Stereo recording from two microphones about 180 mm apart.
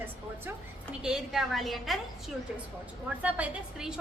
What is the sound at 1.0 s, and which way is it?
Speech, 5° right (ahead or behind).